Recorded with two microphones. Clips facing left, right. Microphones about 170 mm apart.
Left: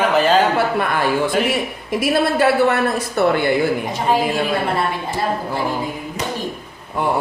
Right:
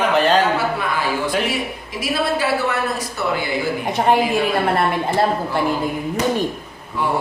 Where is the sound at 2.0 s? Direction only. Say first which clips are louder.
Left 4 dB; 55° left (ahead or behind).